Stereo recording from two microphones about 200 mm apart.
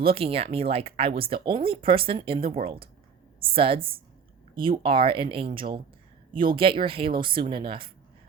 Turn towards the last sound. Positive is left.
turn(degrees=-25)  # may be behind; listen again after turning